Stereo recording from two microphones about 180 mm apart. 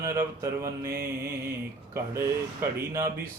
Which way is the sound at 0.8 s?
55° right (ahead or behind).